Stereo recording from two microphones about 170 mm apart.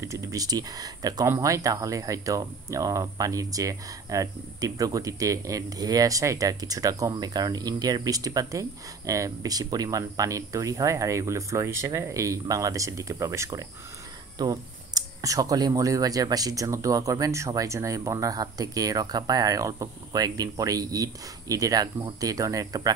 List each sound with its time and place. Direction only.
0.0 s speech: 20° right (ahead or behind)